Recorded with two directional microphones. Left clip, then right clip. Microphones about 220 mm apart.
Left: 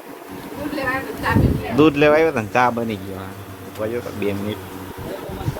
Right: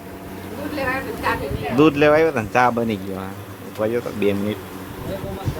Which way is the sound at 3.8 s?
15° right (ahead or behind).